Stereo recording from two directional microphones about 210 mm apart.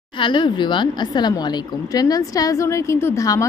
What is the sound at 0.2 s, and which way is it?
A woman's voice, 20° left (ahead or behind).